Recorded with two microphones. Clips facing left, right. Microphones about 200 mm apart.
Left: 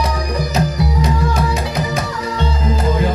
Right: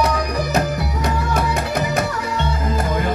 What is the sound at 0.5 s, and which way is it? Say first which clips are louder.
Music: left 4 dB; 55° right (ahead or behind).